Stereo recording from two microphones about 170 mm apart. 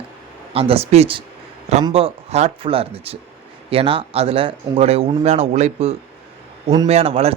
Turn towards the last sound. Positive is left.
turn(degrees=-35)  # may be behind; listen again after turning